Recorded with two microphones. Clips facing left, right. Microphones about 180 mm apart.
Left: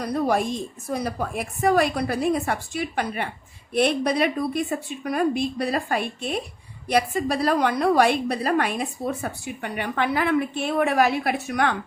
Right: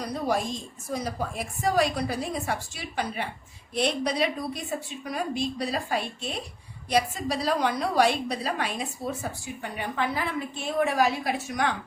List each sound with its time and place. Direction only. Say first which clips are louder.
0.0 s a woman's voice: left 5 dB; 55° left (ahead or behind)